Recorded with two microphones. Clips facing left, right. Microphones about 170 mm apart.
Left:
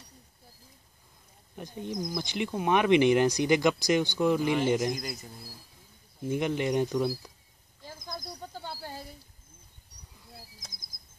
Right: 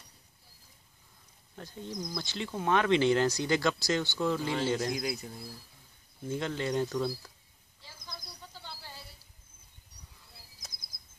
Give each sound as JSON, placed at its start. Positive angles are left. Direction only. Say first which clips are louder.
{"t": 1.6, "sound": "speech", "louder": "left 5 dB", "side_deg": 15}
{"t": 6.2, "sound": "speech", "louder": "left 5 dB", "side_deg": 15}
{"t": 7.8, "sound": "snake", "louder": "left 8 dB", "side_deg": 45}
{"t": 10.7, "sound": "insect", "louder": "left 4 dB", "side_deg": 45}